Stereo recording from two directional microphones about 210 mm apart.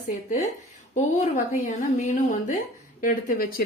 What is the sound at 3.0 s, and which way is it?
Speech, 45° left (ahead or behind).